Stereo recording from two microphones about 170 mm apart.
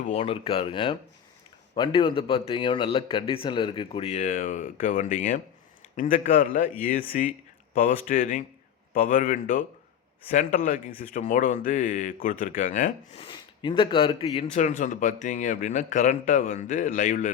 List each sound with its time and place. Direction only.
0.0 s a man's voice: 35° left (ahead or behind); by 12.9 s 50° left (ahead or behind)
13.1 s speech: 30° left (ahead or behind)
14.4 s speech: 45° left (ahead or behind)